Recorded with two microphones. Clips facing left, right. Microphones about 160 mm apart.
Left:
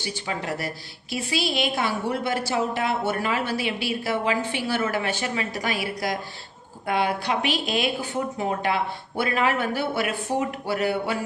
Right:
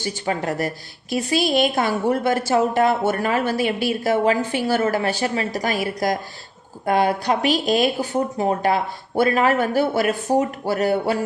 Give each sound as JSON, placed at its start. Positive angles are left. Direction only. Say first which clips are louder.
{"t": 0.0, "sound": "a woman's voice", "louder": "right 6 dB", "side_deg": -45}